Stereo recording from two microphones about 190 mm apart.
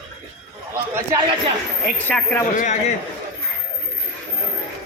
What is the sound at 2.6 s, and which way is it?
Speech, 40° left (ahead or behind).